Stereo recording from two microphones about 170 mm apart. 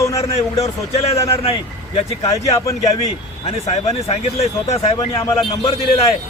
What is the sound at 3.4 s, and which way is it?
Speech, 40° left (ahead or behind).